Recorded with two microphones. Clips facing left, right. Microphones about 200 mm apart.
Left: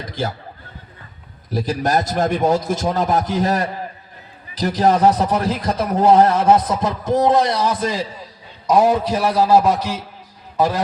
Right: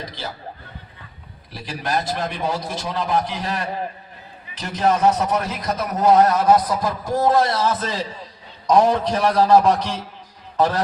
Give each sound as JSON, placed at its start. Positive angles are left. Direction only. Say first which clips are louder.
{"t": 0.1, "sound": "chuckle", "louder": "left 8 dB", "side_deg": 50}
{"t": 1.5, "sound": "a man's voice", "louder": "left 6 dB", "side_deg": 45}